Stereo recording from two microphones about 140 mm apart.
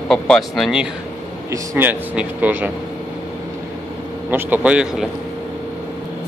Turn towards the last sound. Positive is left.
turn(degrees=-5)  # may be behind; listen again after turning